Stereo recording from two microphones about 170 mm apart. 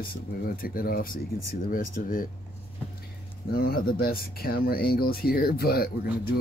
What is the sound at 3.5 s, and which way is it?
Speech, 65° left (ahead or behind).